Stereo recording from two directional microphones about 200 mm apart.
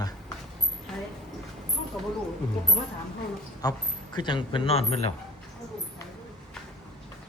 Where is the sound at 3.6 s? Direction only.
20° left (ahead or behind).